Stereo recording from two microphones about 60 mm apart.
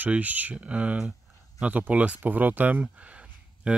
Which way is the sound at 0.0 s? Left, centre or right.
Right.